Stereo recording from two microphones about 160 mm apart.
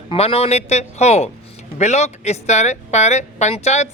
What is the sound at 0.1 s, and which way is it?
Speech, 35° left (ahead or behind).